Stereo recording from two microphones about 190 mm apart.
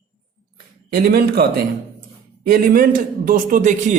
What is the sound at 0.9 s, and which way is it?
A man's voice, 55° right (ahead or behind).